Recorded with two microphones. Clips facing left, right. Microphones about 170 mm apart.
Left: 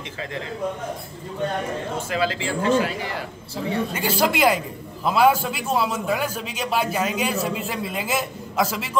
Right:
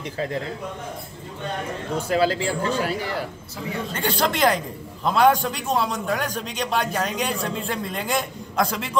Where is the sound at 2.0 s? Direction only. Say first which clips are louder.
Right 5 dB; 40° right (ahead or behind).